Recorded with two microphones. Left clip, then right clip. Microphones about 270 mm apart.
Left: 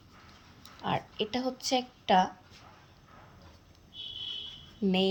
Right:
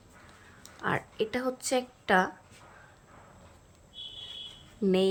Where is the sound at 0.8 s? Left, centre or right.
Centre.